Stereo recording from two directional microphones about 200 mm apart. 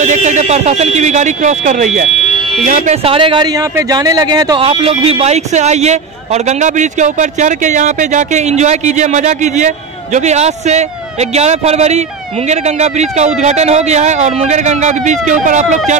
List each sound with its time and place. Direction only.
0.0 s speech: 35° right (ahead or behind)